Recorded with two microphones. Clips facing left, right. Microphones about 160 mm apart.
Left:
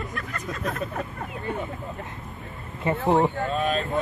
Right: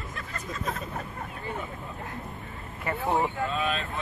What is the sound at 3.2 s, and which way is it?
Speech, 40° left (ahead or behind).